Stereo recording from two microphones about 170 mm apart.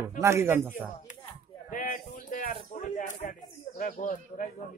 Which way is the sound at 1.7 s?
50° left (ahead or behind).